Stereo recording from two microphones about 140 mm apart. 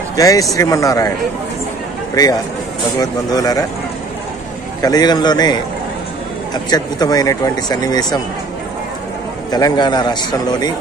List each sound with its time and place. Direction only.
0.1 s speech: 25° left (ahead or behind)
2.1 s speech: 25° left (ahead or behind)
4.8 s speech: 30° left (ahead or behind)
9.5 s speech: 30° left (ahead or behind)